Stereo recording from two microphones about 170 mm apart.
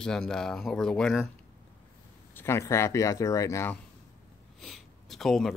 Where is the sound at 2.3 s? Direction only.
15° left (ahead or behind).